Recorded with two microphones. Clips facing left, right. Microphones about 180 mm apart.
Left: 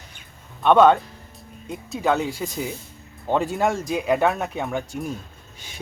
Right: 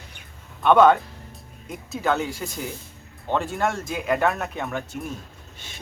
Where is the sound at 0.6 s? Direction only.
Centre (ahead or behind).